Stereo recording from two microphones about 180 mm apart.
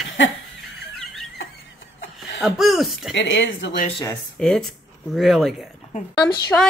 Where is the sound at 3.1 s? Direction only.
90° left.